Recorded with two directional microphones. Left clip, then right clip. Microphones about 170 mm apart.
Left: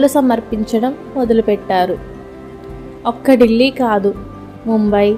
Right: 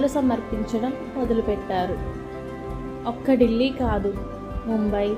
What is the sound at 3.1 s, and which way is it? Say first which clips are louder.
A woman's voice: left 10 dB; 50° left (ahead or behind).